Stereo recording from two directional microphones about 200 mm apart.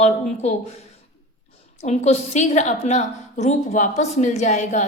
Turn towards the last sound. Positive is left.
turn(degrees=35)  # may be behind; listen again after turning